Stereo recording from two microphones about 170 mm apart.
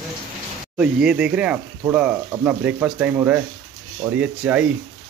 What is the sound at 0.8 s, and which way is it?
Speech, 5° right (ahead or behind).